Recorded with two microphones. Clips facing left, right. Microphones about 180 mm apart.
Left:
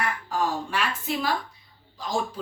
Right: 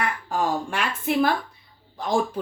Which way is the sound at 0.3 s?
55° right (ahead or behind).